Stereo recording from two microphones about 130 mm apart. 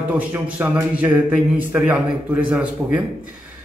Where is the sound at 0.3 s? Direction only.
15° right (ahead or behind).